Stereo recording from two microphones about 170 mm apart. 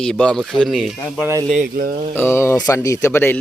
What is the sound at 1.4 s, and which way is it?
Speech, 50° right (ahead or behind).